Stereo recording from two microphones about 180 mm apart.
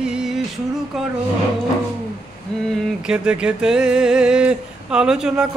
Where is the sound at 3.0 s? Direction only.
5° right (ahead or behind).